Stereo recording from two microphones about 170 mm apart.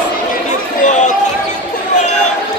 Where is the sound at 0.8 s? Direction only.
45° left (ahead or behind).